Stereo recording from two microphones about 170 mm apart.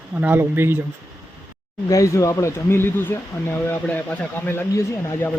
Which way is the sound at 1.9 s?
20° left (ahead or behind).